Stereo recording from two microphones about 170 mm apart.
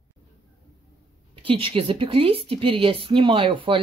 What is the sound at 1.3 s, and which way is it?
Speech, 30° right (ahead or behind).